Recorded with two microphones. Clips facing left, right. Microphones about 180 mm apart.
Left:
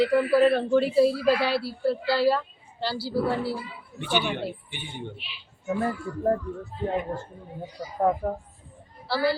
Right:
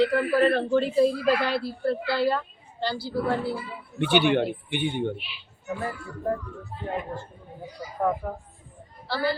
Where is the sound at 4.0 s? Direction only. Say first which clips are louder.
Right 6 dB; 65° right (ahead or behind).